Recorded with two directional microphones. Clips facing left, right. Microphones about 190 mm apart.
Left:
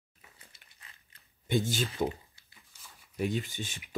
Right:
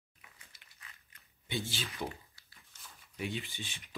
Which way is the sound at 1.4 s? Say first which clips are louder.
Left 9 dB; 45° left (ahead or behind).